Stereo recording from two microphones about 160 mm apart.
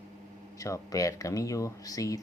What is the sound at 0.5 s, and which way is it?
Speech, 20° left (ahead or behind).